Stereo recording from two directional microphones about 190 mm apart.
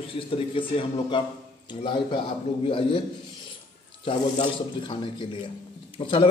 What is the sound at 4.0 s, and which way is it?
A man's voice, 25° left (ahead or behind).